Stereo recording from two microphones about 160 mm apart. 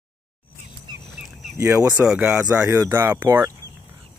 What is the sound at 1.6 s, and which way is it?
Speech, 10° right (ahead or behind).